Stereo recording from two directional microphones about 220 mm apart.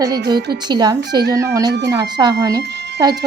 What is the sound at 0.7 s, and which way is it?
Speech, 20° right (ahead or behind).